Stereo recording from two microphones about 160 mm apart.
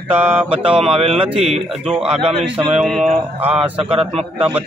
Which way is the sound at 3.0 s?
40° right (ahead or behind).